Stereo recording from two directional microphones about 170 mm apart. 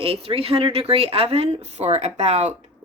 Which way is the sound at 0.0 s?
35° right (ahead or behind).